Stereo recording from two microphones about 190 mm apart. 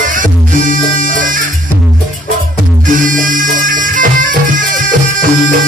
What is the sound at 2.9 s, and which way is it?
Music, 45° right (ahead or behind).